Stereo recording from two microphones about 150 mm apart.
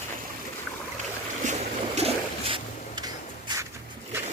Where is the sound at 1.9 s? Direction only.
40° right (ahead or behind).